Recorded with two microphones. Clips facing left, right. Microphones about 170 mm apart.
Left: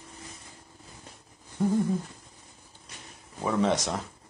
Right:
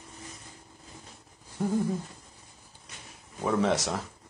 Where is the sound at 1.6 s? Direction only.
5° right (ahead or behind).